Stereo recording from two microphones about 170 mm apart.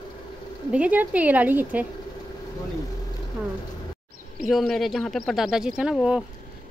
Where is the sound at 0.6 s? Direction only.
10° right (ahead or behind).